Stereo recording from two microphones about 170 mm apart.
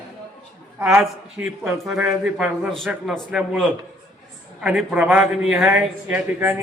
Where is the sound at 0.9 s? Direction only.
5° right (ahead or behind).